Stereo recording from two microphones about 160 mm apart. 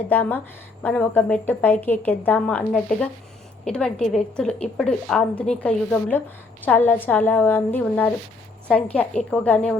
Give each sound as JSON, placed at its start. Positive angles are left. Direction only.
{"t": 0.1, "sound": "a woman's voice", "side_deg": 10}